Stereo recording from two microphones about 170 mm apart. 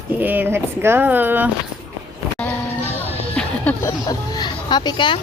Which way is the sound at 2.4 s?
10° left (ahead or behind).